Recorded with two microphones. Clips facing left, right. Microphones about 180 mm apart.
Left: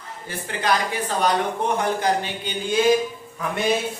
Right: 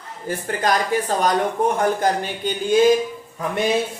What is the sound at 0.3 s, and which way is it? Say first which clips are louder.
Speech: right 3 dB; 45° right (ahead or behind).